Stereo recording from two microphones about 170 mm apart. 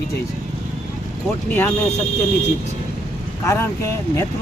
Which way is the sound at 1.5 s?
10° left (ahead or behind).